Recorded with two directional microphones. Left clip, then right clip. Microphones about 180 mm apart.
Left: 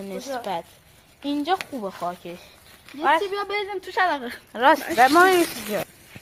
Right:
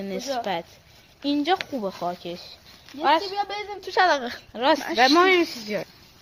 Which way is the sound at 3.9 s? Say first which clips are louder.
Right 3 dB; 50° right (ahead or behind).